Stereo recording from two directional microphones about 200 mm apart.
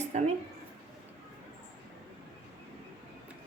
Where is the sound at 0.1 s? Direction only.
35° right (ahead or behind).